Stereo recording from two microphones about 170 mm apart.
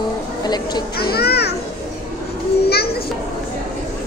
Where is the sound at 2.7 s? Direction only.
70° left (ahead or behind).